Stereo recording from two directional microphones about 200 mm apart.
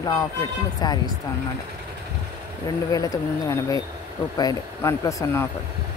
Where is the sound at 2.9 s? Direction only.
15° left (ahead or behind).